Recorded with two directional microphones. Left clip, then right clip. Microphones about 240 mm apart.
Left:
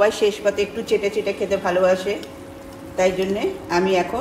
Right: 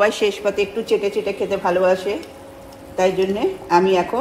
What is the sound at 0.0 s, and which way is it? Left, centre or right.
A woman's voice, right.